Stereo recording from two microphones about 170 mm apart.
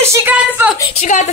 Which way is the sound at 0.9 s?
45° left (ahead or behind).